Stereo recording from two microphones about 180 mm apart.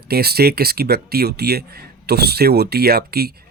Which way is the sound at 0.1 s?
60° right (ahead or behind).